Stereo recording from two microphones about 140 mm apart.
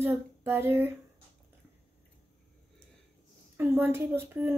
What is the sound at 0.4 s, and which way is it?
Speech, 15° right (ahead or behind).